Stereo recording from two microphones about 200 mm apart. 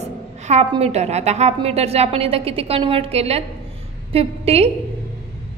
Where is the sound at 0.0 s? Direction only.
35° right (ahead or behind).